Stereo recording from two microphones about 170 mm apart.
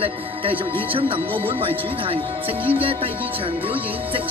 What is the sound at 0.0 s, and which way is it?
Speech, 30° right (ahead or behind).